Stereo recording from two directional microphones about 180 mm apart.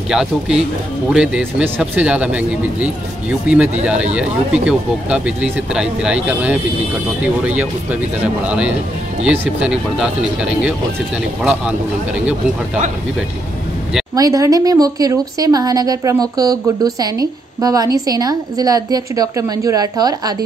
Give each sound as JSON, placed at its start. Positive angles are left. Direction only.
{"t": 0.1, "sound": "speech", "side_deg": -5}
{"t": 14.1, "sound": "speech", "side_deg": -20}